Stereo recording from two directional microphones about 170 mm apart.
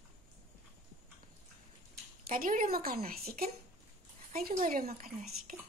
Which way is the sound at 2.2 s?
55° right (ahead or behind).